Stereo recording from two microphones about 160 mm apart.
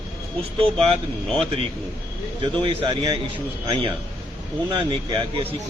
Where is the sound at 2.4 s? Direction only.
30° right (ahead or behind).